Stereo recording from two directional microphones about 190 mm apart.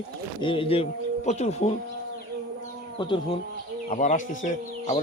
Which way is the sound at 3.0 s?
25° left (ahead or behind).